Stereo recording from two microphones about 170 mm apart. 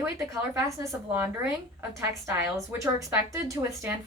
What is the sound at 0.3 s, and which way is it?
A woman's voice, 20° right (ahead or behind).